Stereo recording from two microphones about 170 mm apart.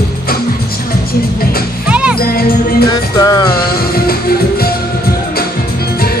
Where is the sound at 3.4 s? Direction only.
65° left (ahead or behind).